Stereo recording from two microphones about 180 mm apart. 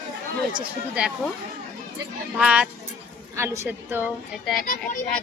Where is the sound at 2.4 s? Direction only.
5° right (ahead or behind).